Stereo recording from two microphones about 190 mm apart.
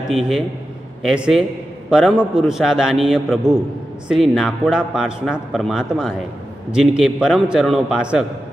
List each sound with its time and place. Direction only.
0.1 s a man's voice: centre (ahead or behind)